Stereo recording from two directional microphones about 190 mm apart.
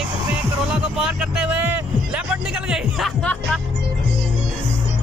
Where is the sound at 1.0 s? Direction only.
5° right (ahead or behind).